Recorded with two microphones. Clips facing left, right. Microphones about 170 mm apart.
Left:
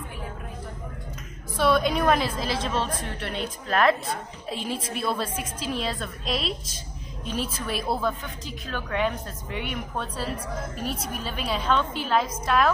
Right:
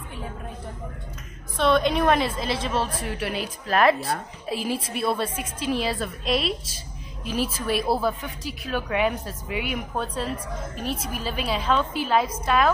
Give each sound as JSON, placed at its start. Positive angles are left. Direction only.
{"t": 1.6, "sound": "a woman's voice", "side_deg": 5}